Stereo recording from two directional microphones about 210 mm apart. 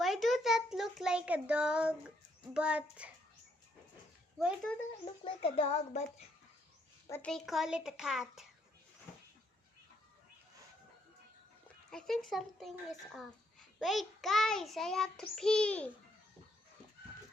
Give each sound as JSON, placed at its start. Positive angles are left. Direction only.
{"t": 0.0, "sound": "child singing", "side_deg": 0}
{"t": 4.4, "sound": "child singing", "side_deg": 0}
{"t": 5.0, "sound": "speech", "side_deg": 25}
{"t": 7.1, "sound": "child singing", "side_deg": 5}
{"t": 11.9, "sound": "child singing", "side_deg": 0}